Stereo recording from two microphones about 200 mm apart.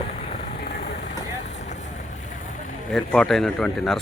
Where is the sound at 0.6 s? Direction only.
50° left (ahead or behind).